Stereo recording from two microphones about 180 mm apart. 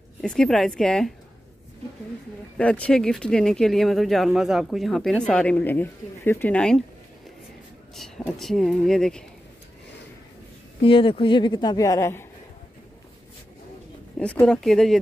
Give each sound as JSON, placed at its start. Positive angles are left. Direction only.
{"t": 0.2, "sound": "speech", "side_deg": 5}
{"t": 2.5, "sound": "speech", "side_deg": 5}
{"t": 8.2, "sound": "speech", "side_deg": 0}
{"t": 10.8, "sound": "a woman's voice", "side_deg": 30}
{"t": 14.1, "sound": "speech", "side_deg": 5}